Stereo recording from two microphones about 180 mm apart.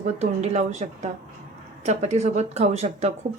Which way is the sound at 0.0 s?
40° right (ahead or behind).